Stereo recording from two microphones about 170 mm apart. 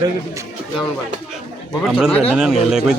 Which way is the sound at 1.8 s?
Centre (ahead or behind).